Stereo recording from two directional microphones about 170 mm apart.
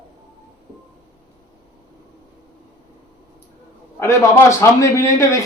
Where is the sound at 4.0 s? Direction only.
15° left (ahead or behind).